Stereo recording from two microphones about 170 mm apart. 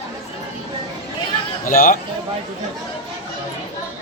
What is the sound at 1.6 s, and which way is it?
Speech, 55° left (ahead or behind).